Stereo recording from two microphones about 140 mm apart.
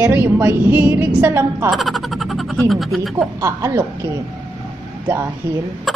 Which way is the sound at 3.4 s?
20° right (ahead or behind).